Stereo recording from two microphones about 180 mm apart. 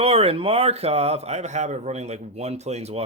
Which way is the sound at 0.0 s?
35° right (ahead or behind).